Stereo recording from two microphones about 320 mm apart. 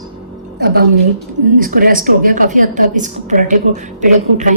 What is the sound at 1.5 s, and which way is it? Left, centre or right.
A woman's voice, right.